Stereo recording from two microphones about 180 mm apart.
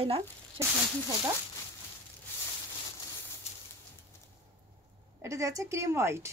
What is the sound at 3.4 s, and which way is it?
Bird, 35° left (ahead or behind).